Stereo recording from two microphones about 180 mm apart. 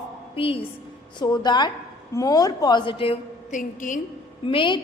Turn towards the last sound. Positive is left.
turn(degrees=25)  # may be behind; listen again after turning